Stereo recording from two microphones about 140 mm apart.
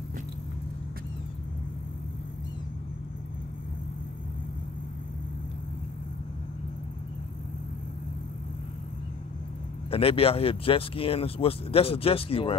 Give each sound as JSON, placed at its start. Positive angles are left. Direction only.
{"t": 9.8, "sound": "speech", "side_deg": 40}